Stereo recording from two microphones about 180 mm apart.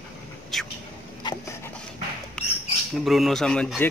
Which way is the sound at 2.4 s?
5° left (ahead or behind).